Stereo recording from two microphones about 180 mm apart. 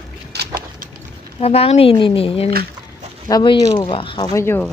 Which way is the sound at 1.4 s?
35° left (ahead or behind).